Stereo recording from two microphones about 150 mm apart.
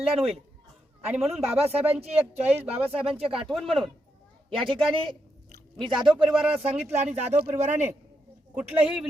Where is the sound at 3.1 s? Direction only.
40° right (ahead or behind).